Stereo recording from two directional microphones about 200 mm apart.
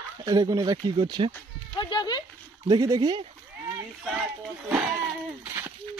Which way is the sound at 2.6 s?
15° right (ahead or behind).